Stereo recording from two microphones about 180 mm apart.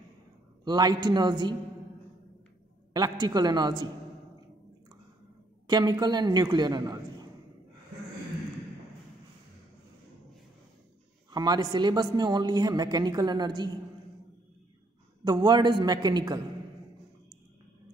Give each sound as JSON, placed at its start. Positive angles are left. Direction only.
{"t": 0.7, "sound": "a woman's voice", "side_deg": -20}
{"t": 2.9, "sound": "a woman's voice", "side_deg": -20}
{"t": 5.7, "sound": "a woman's voice", "side_deg": -20}
{"t": 11.2, "sound": "a woman's voice", "side_deg": -25}
{"t": 15.2, "sound": "a woman's voice", "side_deg": -25}